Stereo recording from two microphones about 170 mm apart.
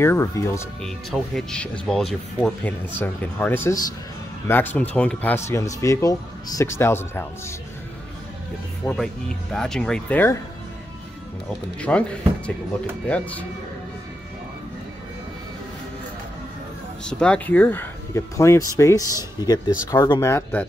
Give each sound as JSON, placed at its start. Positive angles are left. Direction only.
{"t": 0.0, "sound": "speech", "side_deg": 15}
{"t": 0.8, "sound": "speech", "side_deg": 0}
{"t": 8.8, "sound": "speech", "side_deg": 5}
{"t": 11.8, "sound": "speech", "side_deg": 5}
{"t": 17.0, "sound": "speech", "side_deg": 5}